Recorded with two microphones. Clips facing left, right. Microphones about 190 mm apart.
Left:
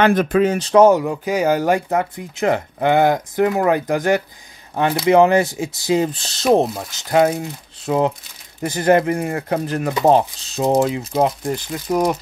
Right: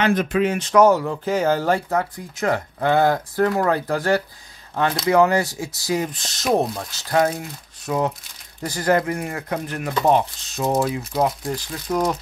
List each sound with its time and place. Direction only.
0.0 s speech: 50° left (ahead or behind); by 0.8 s 35° left (ahead or behind)
0.8 s speech: 15° left (ahead or behind)
5.1 s speech: 20° left (ahead or behind)